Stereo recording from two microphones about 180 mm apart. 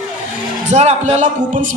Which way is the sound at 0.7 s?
40° right (ahead or behind).